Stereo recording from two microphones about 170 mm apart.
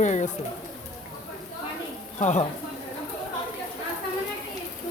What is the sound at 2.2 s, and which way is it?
Speech, 45° left (ahead or behind).